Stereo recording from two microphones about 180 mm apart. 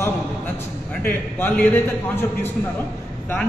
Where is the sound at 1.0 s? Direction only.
10° left (ahead or behind).